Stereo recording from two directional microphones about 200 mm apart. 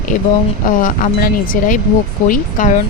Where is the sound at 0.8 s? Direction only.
40° left (ahead or behind).